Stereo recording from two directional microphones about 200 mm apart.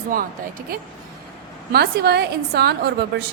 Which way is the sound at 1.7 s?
55° right (ahead or behind).